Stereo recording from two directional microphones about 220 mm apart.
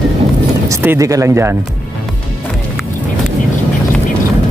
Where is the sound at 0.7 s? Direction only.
10° right (ahead or behind).